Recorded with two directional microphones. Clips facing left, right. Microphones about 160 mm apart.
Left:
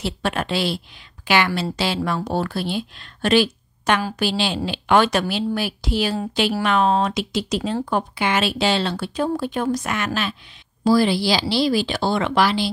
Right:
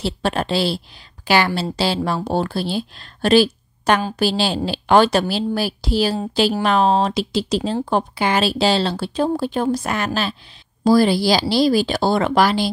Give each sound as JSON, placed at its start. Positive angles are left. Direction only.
{"t": 0.0, "sound": "a woman's voice", "side_deg": -30}